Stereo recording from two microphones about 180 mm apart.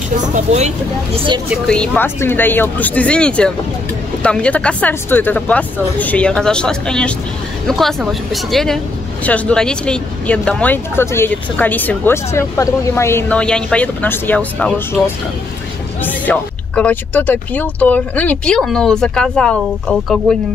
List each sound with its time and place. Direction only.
0.2 s speech: 40° right (ahead or behind)
1.7 s speech: 10° left (ahead or behind)
16.0 s speech: 10° left (ahead or behind)